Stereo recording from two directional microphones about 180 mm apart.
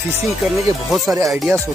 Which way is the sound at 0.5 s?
Centre (ahead or behind).